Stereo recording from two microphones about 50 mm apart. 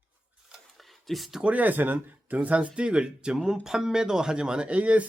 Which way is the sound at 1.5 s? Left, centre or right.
Right.